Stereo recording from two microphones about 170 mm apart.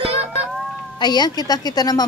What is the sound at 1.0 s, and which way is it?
A woman's voice, 25° left (ahead or behind).